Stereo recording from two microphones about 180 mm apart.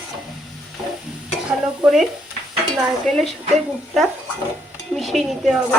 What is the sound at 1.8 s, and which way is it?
A woman's voice, centre (ahead or behind).